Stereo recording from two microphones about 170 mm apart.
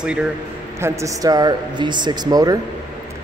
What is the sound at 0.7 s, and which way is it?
Speech, 15° right (ahead or behind).